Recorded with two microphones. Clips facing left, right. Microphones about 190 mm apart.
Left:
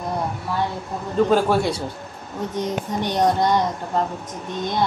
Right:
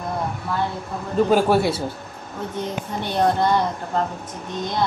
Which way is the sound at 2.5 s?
15° left (ahead or behind).